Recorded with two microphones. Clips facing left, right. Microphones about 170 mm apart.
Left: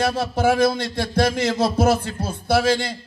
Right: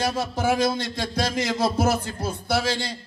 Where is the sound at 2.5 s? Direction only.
50° left (ahead or behind).